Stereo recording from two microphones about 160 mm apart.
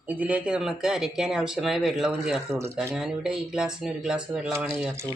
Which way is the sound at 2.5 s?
15° right (ahead or behind).